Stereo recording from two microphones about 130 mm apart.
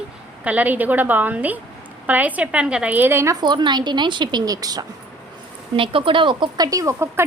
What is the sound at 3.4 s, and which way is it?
A woman's voice, 35° right (ahead or behind).